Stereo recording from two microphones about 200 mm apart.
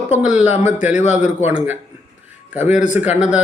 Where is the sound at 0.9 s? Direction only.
35° left (ahead or behind).